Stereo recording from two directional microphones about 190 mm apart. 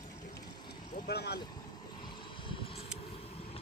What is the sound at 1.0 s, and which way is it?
Speech, 60° left (ahead or behind).